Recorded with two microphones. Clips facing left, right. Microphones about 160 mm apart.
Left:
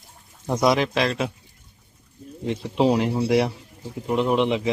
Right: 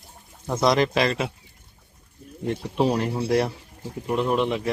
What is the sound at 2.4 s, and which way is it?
Speech, 15° left (ahead or behind).